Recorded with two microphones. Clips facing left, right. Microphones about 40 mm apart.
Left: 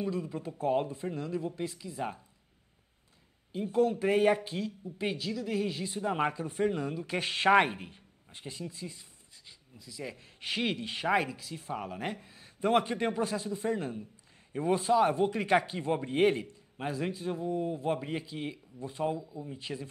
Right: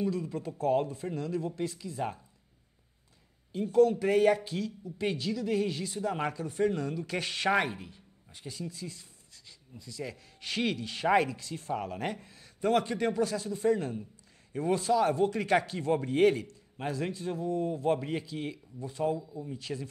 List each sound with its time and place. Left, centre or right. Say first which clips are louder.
0.0 s speech: right 2 dB; centre
3.5 s speech: right 4 dB; centre
5.0 s speech: right 2 dB; centre
5.9 s speech: left 2 dB; left
11.1 s speech: right 3 dB; centre
12.4 s speech: left 1 dB; left